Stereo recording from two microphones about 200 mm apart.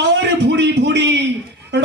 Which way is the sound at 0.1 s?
60° right (ahead or behind).